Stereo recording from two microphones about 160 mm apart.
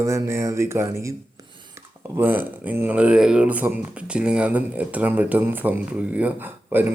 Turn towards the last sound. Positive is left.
turn(degrees=-10)  # may be behind; listen again after turning